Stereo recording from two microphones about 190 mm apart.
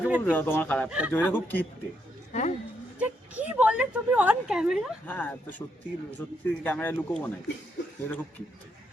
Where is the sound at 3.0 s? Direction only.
5° right (ahead or behind).